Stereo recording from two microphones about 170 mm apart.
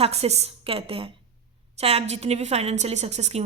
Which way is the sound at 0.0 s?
40° right (ahead or behind).